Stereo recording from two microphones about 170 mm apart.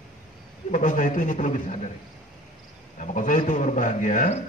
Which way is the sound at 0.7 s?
50° left (ahead or behind).